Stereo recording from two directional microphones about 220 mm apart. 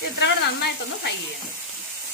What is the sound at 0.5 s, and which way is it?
Speech, 50° left (ahead or behind).